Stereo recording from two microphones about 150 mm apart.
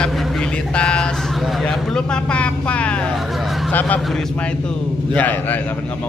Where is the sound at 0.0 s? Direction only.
5° left (ahead or behind).